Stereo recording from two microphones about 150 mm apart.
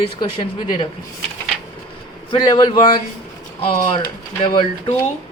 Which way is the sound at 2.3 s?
30° left (ahead or behind).